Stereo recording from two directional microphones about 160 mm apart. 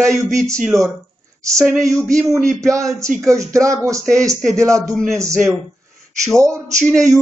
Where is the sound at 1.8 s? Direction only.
20° right (ahead or behind).